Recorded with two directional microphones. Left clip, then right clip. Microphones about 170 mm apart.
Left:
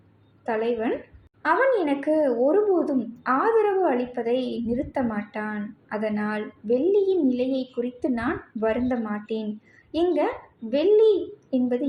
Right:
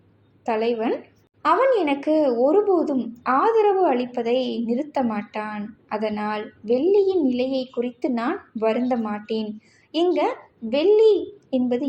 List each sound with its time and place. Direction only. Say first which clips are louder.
0.4 s a woman's voice: right 3 dB; 25° right (ahead or behind)